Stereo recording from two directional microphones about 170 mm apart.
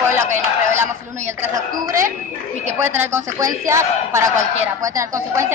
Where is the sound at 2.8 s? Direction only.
15° right (ahead or behind).